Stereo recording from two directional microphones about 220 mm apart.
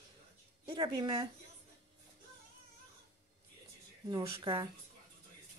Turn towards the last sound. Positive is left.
turn(degrees=-20)  # may be behind; listen again after turning